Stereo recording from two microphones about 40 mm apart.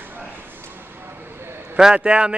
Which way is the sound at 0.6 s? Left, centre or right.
Right.